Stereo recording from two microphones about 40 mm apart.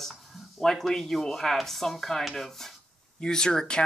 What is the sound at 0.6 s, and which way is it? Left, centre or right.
Speech, centre.